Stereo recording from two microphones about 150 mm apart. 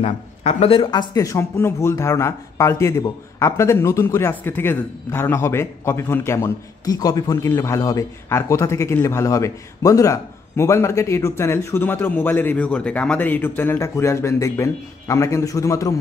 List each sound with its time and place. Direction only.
0.0 s speech: 45° left (ahead or behind); by 15.9 s 20° left (ahead or behind)